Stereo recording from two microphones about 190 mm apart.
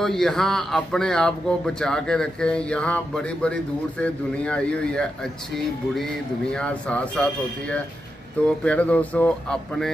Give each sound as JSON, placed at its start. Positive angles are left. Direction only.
{"t": 0.0, "sound": "speech", "side_deg": 0}
{"t": 6.5, "sound": "speech", "side_deg": 5}
{"t": 8.6, "sound": "speech", "side_deg": 5}